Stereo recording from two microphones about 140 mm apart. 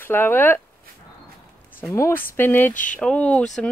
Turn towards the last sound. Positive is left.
turn(degrees=5)  # may be behind; listen again after turning